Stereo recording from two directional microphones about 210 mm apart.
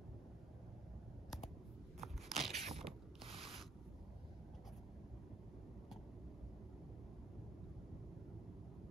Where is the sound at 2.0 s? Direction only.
Centre (ahead or behind).